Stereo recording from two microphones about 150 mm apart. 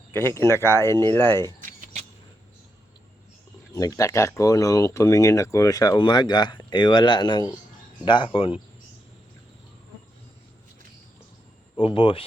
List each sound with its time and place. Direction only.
0.1 s speech: 15° left (ahead or behind)
3.7 s speech: 20° left (ahead or behind)
11.8 s speech: 35° left (ahead or behind)